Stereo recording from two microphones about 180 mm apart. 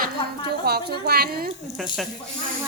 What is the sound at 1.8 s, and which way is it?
Speech, centre (ahead or behind).